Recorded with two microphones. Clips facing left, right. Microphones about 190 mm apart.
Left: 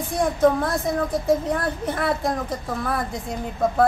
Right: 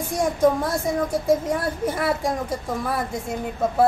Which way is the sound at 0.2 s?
10° right (ahead or behind).